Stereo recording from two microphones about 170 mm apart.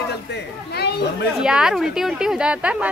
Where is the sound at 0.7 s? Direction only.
75° left (ahead or behind).